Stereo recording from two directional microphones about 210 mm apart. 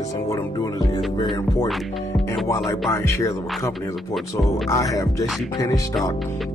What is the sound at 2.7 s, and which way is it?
Speech, 15° left (ahead or behind).